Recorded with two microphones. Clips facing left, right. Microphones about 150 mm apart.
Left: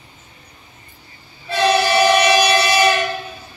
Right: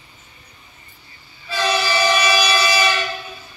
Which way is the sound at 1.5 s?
60° left (ahead or behind).